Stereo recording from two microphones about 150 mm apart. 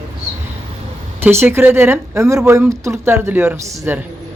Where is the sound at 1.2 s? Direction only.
15° right (ahead or behind).